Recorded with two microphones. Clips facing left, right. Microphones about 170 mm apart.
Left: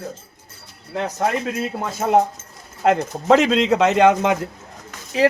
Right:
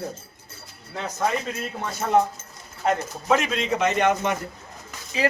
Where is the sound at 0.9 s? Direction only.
60° left (ahead or behind); by 4.5 s 90° left.